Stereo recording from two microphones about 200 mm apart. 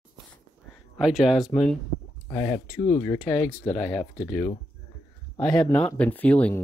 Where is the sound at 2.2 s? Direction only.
15° left (ahead or behind).